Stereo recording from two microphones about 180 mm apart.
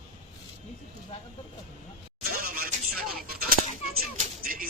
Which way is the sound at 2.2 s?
55° right (ahead or behind).